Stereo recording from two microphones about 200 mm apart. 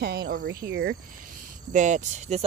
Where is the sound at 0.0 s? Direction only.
55° right (ahead or behind).